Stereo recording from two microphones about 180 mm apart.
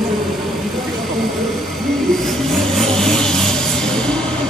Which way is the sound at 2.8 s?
Centre (ahead or behind).